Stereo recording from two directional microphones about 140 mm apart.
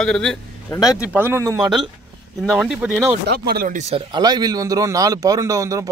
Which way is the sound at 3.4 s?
90° right.